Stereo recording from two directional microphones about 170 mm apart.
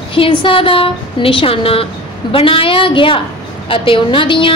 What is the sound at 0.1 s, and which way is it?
A woman's voice, 30° left (ahead or behind).